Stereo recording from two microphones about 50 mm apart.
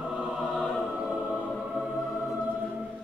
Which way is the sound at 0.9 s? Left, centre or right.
Right.